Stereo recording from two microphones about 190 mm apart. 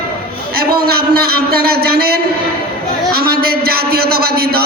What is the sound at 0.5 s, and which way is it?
A man's voice, 55° right (ahead or behind).